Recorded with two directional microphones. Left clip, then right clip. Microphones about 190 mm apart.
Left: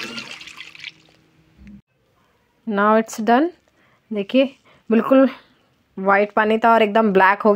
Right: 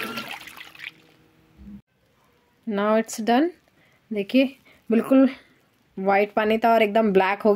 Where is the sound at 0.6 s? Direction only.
10° right (ahead or behind).